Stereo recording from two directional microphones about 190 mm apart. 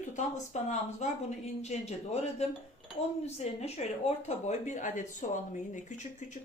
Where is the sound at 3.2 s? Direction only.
35° left (ahead or behind).